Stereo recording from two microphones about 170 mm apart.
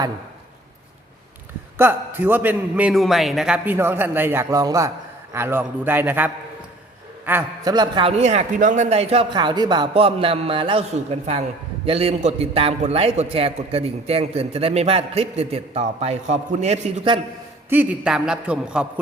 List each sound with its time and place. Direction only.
1.8 s a man's voice: 15° right (ahead or behind)
7.6 s a man's voice: 25° right (ahead or behind)
8.1 s a man's voice: 40° right (ahead or behind)
17.7 s speech: 5° right (ahead or behind)